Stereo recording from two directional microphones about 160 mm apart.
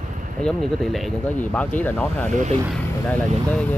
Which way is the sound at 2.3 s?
45° right (ahead or behind).